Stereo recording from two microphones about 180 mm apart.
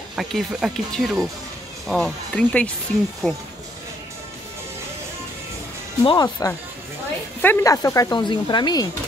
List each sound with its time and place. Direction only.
0.1 s speech: centre (ahead or behind)
6.0 s speech: 20° left (ahead or behind)